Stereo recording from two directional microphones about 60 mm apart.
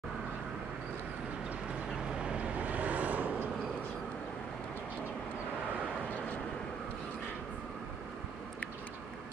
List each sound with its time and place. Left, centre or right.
2.2 s vehicle: centre